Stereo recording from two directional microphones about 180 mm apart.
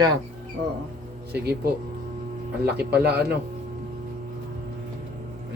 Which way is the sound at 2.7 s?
60° right (ahead or behind).